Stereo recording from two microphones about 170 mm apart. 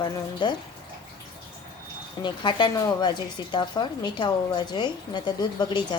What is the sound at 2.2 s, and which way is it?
A woman's voice, 25° left (ahead or behind).